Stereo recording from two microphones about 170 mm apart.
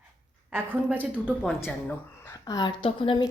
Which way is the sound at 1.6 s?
15° left (ahead or behind).